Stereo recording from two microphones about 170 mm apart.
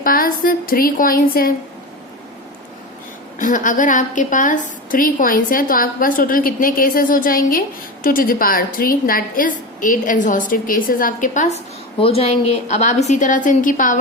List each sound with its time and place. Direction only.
0.0 s a woman's voice: 55° left (ahead or behind)
3.3 s a woman's voice: 50° left (ahead or behind)
11.9 s a woman's voice: 35° left (ahead or behind); by 14.0 s 50° left (ahead or behind)